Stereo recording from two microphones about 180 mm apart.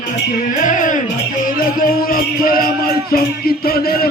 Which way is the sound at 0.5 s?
45° left (ahead or behind).